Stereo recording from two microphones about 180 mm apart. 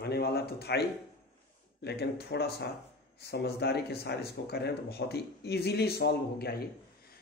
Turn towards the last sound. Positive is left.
turn(degrees=60)  # may be behind; listen again after turning